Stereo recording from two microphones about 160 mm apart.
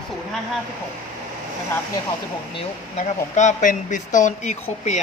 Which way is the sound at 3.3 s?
50° left (ahead or behind).